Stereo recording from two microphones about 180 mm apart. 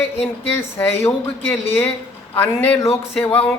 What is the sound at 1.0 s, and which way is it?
Speech, 10° left (ahead or behind).